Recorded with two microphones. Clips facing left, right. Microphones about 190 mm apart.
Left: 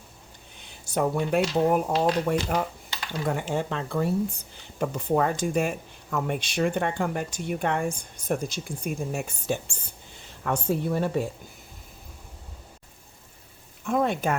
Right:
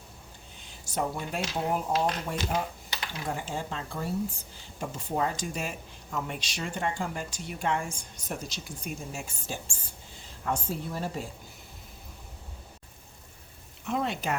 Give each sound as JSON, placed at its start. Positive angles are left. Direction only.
{"t": 0.9, "sound": "speech", "side_deg": 60}
{"t": 13.8, "sound": "speech", "side_deg": 50}